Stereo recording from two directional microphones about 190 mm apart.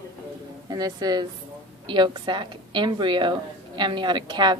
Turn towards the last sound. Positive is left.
turn(degrees=-25)  # may be behind; listen again after turning